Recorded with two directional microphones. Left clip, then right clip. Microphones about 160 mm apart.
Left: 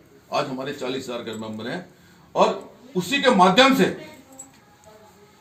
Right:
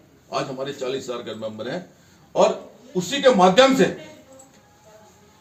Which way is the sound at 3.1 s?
15° right (ahead or behind).